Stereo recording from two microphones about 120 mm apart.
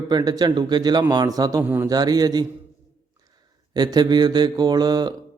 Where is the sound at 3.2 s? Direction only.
35° right (ahead or behind).